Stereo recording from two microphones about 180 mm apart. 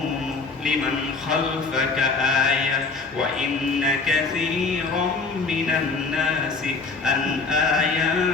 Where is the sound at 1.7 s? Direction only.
Centre (ahead or behind).